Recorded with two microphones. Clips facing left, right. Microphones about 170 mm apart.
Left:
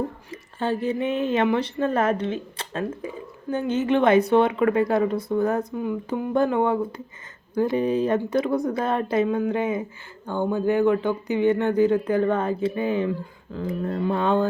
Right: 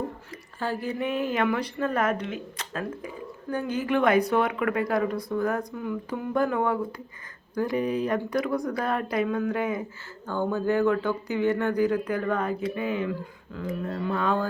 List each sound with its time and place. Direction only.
0.3 s speech: 25° left (ahead or behind)